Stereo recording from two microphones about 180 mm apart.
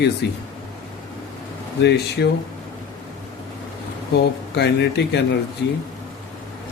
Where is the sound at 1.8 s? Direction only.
70° left (ahead or behind).